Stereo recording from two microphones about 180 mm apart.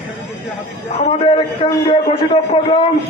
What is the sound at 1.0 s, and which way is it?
A man's voice, 35° left (ahead or behind).